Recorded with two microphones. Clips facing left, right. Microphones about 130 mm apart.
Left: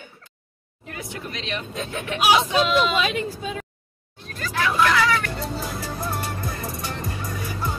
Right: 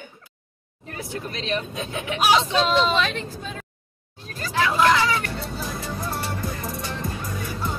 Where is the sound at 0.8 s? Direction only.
35° right (ahead or behind).